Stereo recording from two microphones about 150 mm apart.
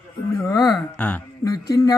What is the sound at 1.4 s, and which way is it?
Speech, 25° left (ahead or behind).